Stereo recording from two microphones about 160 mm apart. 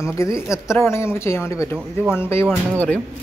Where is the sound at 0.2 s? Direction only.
20° left (ahead or behind).